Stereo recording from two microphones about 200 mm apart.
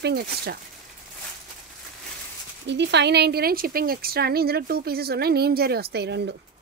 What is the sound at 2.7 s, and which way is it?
A woman's voice, 60° right (ahead or behind).